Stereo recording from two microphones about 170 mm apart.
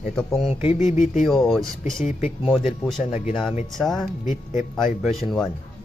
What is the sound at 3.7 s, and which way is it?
Speech, centre (ahead or behind).